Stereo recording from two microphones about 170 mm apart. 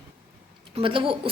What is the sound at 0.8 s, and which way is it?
Speech, 30° right (ahead or behind).